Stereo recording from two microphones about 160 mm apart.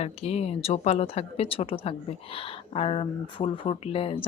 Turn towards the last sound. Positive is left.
turn(degrees=35)  # may be behind; listen again after turning